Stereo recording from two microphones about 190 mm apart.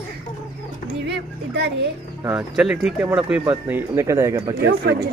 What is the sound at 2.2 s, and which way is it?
Speech, 5° right (ahead or behind).